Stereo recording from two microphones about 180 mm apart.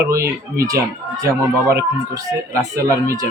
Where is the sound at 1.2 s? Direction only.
15° right (ahead or behind).